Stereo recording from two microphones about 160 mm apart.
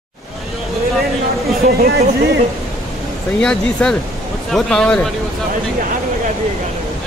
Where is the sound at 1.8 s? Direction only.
75° right (ahead or behind).